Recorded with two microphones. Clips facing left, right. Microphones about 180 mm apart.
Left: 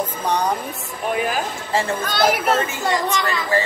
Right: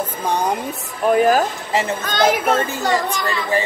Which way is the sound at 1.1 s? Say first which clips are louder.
Right 8 dB; 45° right (ahead or behind).